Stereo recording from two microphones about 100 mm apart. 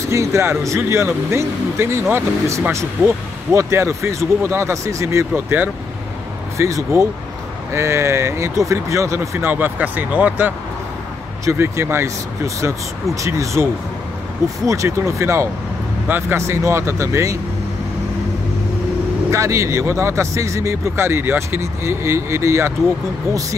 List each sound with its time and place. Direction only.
0.1 s speech: 30° right (ahead or behind)
9.5 s speech: 20° right (ahead or behind)
11.4 s speech: 25° right (ahead or behind)
14.7 s speech: 30° right (ahead or behind)
19.3 s speech: 30° right (ahead or behind)